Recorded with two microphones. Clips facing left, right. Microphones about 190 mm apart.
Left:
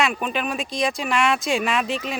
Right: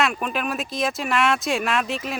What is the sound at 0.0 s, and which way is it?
Speech, centre (ahead or behind).